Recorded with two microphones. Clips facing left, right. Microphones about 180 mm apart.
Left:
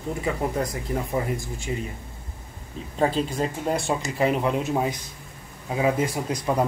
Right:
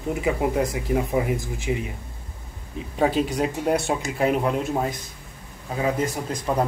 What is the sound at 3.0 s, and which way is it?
Speech, 10° right (ahead or behind).